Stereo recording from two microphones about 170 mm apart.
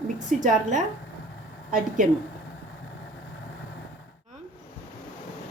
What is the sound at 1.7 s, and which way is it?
Speech, 50° right (ahead or behind).